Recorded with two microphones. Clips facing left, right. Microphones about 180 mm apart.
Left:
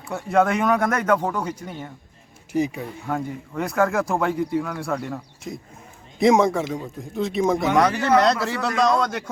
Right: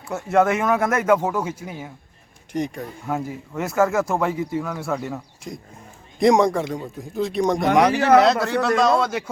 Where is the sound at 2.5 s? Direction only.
5° left (ahead or behind).